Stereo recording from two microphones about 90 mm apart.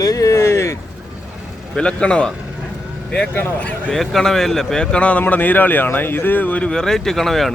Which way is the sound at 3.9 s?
5° left (ahead or behind).